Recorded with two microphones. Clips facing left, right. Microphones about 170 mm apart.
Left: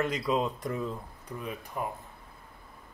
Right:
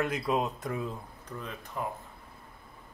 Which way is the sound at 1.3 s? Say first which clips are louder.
Left 3 dB; 10° left (ahead or behind).